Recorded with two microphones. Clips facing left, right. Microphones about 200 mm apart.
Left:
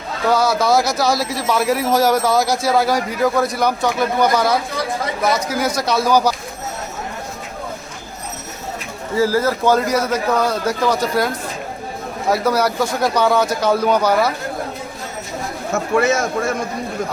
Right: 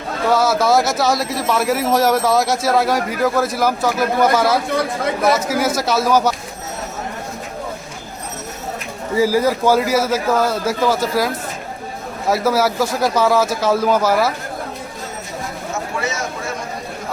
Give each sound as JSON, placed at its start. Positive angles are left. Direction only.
{"t": 0.3, "sound": "speech", "side_deg": 0}
{"t": 9.1, "sound": "speech", "side_deg": -15}
{"t": 12.3, "sound": "speech", "side_deg": 0}
{"t": 16.0, "sound": "a man's voice", "side_deg": 55}